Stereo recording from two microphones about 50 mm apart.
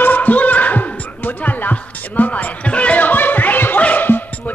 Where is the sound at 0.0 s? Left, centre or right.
Left.